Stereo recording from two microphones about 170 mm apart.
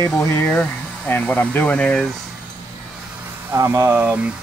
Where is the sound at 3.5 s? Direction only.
15° right (ahead or behind).